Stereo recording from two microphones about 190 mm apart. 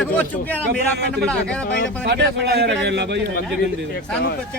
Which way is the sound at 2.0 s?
60° right (ahead or behind).